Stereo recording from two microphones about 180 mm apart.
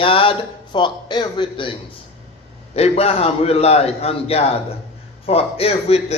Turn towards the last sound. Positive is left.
turn(degrees=35)  # may be behind; listen again after turning